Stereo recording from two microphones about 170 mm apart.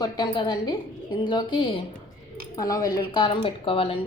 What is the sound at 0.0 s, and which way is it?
A woman's voice, 25° left (ahead or behind).